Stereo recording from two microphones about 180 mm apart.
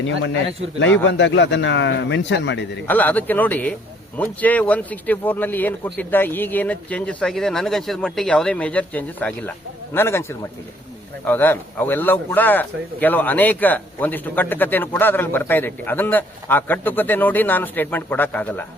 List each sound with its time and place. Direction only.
1.0 s speech: 90° left
2.8 s a man's voice: 10° left (ahead or behind)